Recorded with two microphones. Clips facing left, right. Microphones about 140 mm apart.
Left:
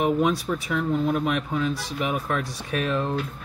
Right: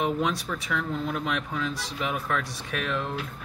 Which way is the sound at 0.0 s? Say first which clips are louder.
Left 5 dB; 20° left (ahead or behind).